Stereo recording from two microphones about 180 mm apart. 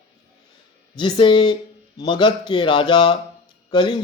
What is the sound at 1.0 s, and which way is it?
Speech, 25° left (ahead or behind).